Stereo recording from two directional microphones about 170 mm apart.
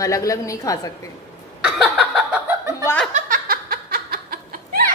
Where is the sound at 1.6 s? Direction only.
5° right (ahead or behind).